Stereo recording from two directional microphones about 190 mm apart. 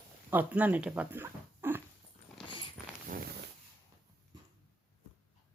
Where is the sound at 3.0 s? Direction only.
50° right (ahead or behind).